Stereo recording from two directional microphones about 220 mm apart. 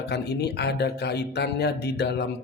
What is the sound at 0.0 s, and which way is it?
Speech, 50° left (ahead or behind).